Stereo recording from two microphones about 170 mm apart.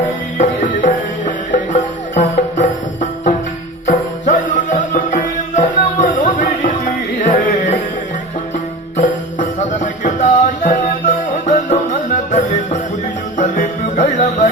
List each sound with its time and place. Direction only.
0.3 s music: 50° left (ahead or behind)
9.0 s music: 45° left (ahead or behind)